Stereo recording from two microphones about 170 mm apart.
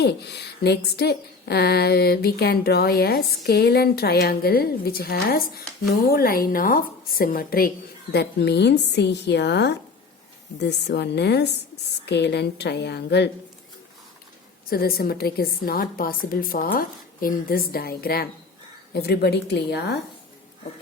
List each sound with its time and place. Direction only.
0.0 s speech: 75° left (ahead or behind); by 7.7 s 60° left (ahead or behind)
8.1 s speech: 75° left (ahead or behind)
14.7 s a woman's voice: 60° left (ahead or behind)